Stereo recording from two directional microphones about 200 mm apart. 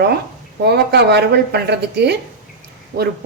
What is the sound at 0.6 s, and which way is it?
A woman's voice, 55° right (ahead or behind).